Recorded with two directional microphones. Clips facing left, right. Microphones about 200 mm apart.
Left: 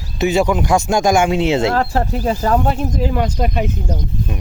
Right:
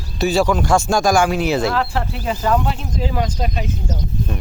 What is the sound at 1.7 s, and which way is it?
Speech, 45° left (ahead or behind).